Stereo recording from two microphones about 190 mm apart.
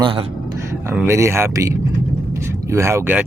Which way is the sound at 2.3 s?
15° right (ahead or behind).